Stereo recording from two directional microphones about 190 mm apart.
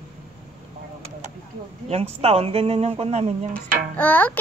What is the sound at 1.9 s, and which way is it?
Dishes, 35° right (ahead or behind).